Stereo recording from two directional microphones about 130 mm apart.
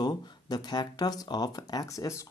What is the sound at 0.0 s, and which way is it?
Speech, 30° left (ahead or behind).